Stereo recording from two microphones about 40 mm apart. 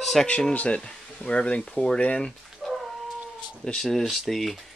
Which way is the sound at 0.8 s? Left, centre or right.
Left.